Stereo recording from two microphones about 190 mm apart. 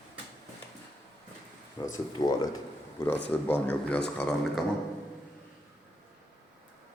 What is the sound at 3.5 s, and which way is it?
Speech, 10° left (ahead or behind).